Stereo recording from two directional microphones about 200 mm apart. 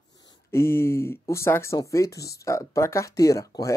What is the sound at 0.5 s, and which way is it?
Speech, 10° left (ahead or behind).